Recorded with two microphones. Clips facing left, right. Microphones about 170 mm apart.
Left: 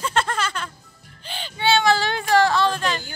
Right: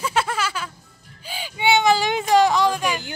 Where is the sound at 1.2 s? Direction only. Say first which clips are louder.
Right 1 dB; 10° right (ahead or behind).